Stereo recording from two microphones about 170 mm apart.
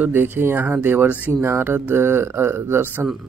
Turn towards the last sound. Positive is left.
turn(degrees=0)  # may be behind; listen again after turning